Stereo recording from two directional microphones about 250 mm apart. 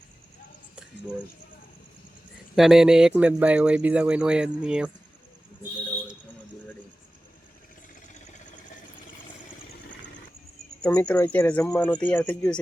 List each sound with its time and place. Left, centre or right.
2.6 s speech: centre
8.0 s a sound: left
10.8 s speech: centre